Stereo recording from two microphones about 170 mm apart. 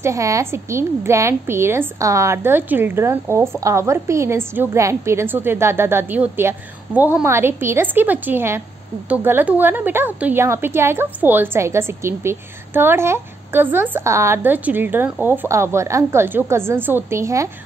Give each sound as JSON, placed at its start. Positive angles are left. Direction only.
{"t": 0.0, "sound": "a woman's voice", "side_deg": -20}